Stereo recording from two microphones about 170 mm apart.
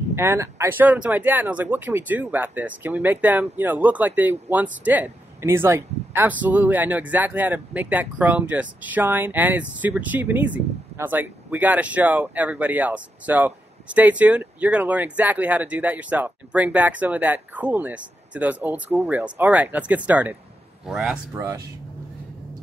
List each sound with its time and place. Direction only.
0.1 s speech: 15° right (ahead or behind)
21.4 s speech: 20° right (ahead or behind)